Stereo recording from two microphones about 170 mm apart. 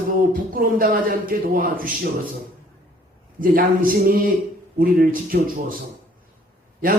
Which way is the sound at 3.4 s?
55° right (ahead or behind).